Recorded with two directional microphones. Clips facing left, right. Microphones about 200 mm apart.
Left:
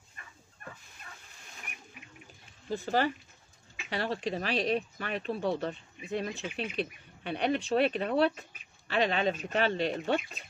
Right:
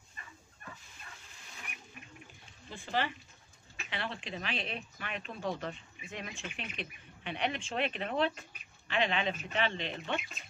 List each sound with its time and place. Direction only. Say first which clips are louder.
2.7 s speech: left 6 dB; 40° left (ahead or behind)